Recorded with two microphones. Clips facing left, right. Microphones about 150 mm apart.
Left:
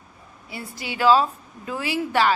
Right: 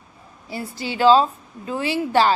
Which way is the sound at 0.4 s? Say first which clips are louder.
Right 5 dB; 30° right (ahead or behind).